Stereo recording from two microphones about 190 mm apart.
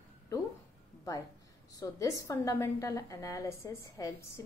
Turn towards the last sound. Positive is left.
turn(degrees=15)  # may be behind; listen again after turning